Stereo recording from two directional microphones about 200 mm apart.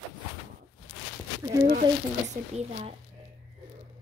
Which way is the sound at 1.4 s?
15° right (ahead or behind).